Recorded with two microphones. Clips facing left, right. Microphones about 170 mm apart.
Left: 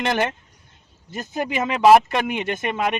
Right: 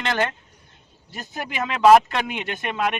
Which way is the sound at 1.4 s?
15° left (ahead or behind).